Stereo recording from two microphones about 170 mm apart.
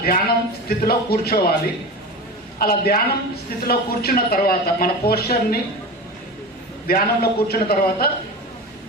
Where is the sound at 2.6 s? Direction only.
60° left (ahead or behind).